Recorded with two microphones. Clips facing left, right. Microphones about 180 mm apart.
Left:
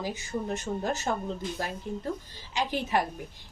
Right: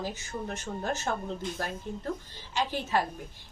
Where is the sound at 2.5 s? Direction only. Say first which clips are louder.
Left 1 dB; 15° left (ahead or behind).